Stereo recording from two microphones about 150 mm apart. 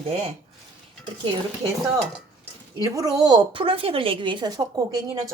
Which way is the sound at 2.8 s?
25° right (ahead or behind).